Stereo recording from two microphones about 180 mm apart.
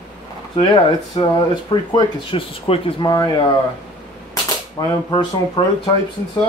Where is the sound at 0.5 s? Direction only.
25° left (ahead or behind).